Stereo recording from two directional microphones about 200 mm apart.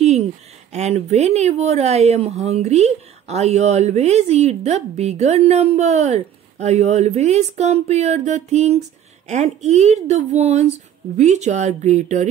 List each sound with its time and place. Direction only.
0.7 s speech: 35° right (ahead or behind)